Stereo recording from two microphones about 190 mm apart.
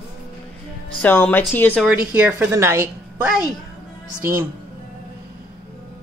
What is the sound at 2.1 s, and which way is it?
A woman's voice, 10° right (ahead or behind).